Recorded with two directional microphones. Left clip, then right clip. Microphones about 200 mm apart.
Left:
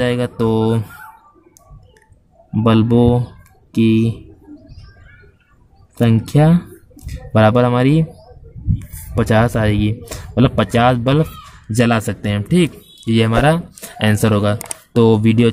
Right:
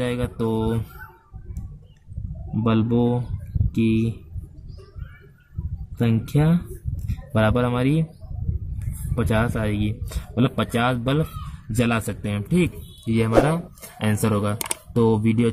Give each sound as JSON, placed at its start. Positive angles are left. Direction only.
{"t": 0.0, "sound": "speech", "side_deg": 15}
{"t": 2.5, "sound": "speech", "side_deg": 20}
{"t": 5.9, "sound": "speech", "side_deg": 15}